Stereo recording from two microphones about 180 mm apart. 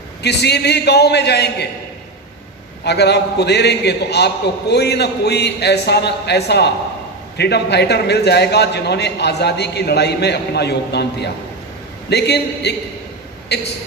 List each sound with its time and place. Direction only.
0.2 s a man's voice: 70° left (ahead or behind)
2.8 s a man's voice: 65° left (ahead or behind)